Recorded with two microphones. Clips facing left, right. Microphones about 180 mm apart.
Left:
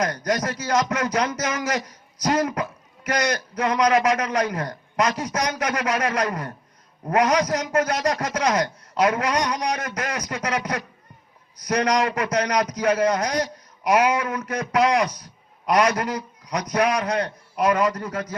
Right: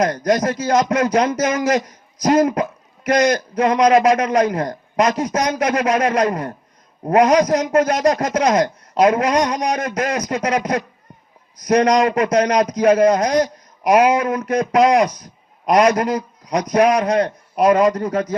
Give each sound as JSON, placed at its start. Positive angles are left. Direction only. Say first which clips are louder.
{"t": 0.3, "sound": "a man's voice", "louder": "right 7 dB", "side_deg": -30}